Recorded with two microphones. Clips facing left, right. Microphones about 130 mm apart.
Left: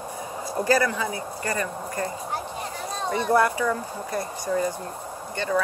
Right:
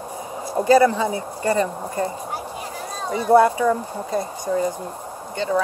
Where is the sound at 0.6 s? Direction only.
25° right (ahead or behind).